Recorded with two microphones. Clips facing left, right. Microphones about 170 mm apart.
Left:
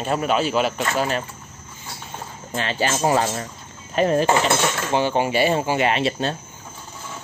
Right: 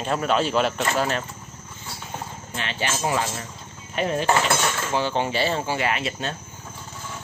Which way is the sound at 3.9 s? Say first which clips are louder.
Left 6 dB; 45° left (ahead or behind).